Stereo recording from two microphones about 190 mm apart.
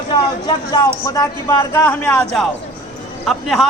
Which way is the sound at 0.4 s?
20° left (ahead or behind).